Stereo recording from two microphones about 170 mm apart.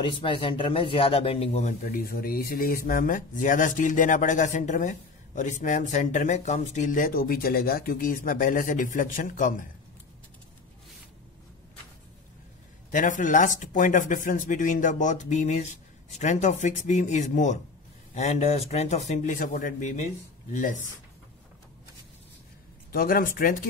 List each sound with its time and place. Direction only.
0.0 s speech: 30° left (ahead or behind)
1.8 s speech: 60° left (ahead or behind)
12.9 s speech: 50° left (ahead or behind)
22.8 s speech: 60° left (ahead or behind)